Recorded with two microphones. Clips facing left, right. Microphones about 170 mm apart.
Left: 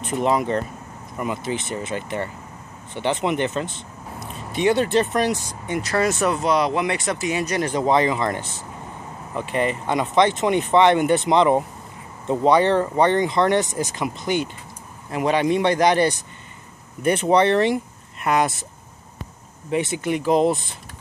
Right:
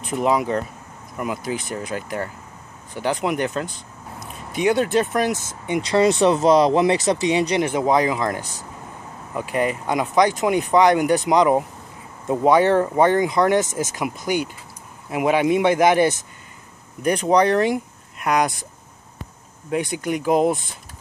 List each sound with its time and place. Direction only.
0.0 s speech: centre (ahead or behind)
5.7 s speech: 20° right (ahead or behind)
6.2 s speech: 35° right (ahead or behind)
7.2 s a man's voice: 15° right (ahead or behind)
17.0 s speech: 5° left (ahead or behind)
19.7 s speech: 5° left (ahead or behind)